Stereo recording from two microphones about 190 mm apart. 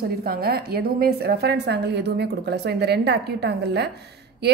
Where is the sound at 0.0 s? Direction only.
55° right (ahead or behind).